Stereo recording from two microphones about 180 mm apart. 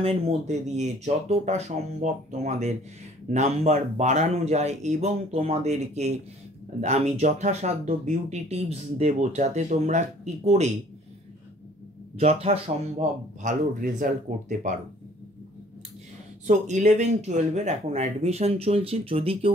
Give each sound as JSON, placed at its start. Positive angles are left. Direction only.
{"t": 0.0, "sound": "speech", "side_deg": -35}
{"t": 12.2, "sound": "speech", "side_deg": -35}
{"t": 16.4, "sound": "speech", "side_deg": -40}